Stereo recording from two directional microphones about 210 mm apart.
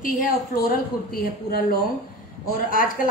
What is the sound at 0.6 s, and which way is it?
A woman's voice, 45° left (ahead or behind).